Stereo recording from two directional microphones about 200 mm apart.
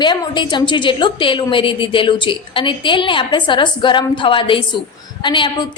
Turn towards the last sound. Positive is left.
turn(degrees=25)  # may be behind; listen again after turning